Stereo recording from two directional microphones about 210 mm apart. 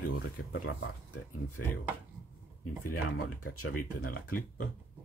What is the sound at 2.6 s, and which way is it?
Speech, 90° left.